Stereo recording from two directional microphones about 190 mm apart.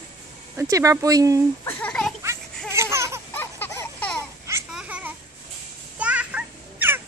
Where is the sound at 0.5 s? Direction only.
15° right (ahead or behind).